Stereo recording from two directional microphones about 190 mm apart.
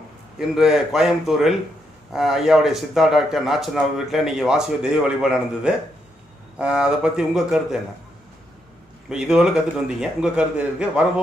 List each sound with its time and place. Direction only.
0.4 s speech: centre (ahead or behind)
9.1 s speech: 5° right (ahead or behind)